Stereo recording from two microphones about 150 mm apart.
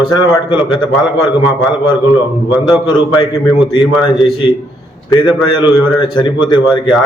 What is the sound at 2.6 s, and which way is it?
A man's voice, 30° left (ahead or behind).